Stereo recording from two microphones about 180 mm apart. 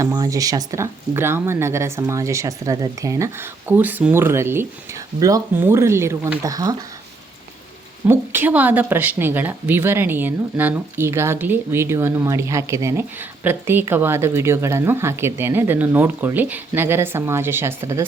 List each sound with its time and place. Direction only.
0.0 s speech: 20° right (ahead or behind)
8.0 s speech: 10° right (ahead or behind)